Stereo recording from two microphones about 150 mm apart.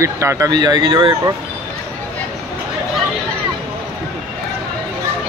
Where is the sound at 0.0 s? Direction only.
20° right (ahead or behind).